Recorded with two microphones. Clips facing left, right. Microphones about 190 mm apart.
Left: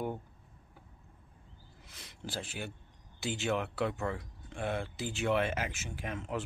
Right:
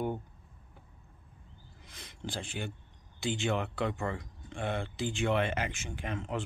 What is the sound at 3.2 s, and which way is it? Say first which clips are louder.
Speech: right 1 dB; 5° left (ahead or behind).